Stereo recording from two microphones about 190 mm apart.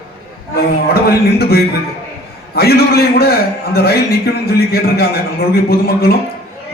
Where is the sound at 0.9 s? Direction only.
55° left (ahead or behind).